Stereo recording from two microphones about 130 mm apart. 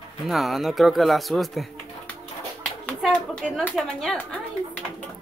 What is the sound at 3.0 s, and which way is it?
Speech, centre (ahead or behind).